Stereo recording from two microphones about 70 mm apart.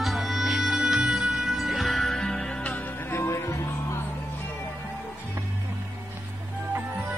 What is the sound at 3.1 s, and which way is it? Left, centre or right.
Music, left.